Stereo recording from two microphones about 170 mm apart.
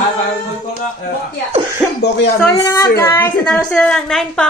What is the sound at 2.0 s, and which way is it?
Speech, 90° left.